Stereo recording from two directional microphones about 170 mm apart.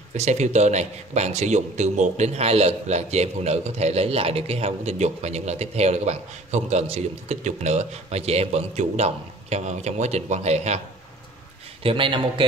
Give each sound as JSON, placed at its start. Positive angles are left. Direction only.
{"t": 0.1, "sound": "speech", "side_deg": -40}
{"t": 11.8, "sound": "a man's voice", "side_deg": -30}